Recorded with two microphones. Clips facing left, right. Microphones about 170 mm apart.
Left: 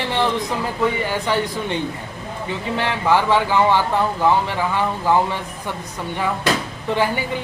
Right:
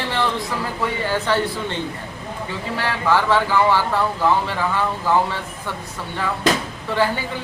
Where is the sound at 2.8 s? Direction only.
20° left (ahead or behind).